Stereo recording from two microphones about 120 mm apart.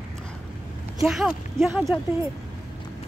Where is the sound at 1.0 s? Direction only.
5° right (ahead or behind).